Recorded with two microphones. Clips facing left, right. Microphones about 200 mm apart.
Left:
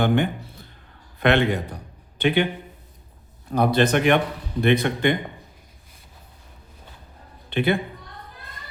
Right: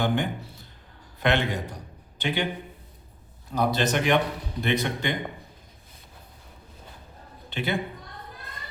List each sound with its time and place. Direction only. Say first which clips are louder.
0.0 s a man's voice: left 5 dB; 60° left (ahead or behind)
3.5 s a man's voice: left 5 dB; 55° left (ahead or behind)
7.5 s a man's voice: left 7 dB; 55° left (ahead or behind)